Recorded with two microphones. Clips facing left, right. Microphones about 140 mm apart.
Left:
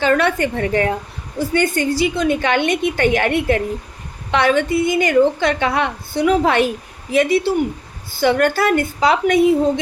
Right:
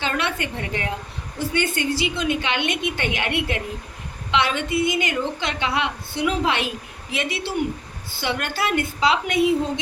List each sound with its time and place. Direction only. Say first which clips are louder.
0.0 s a woman's voice: left 9 dB; 45° left (ahead or behind)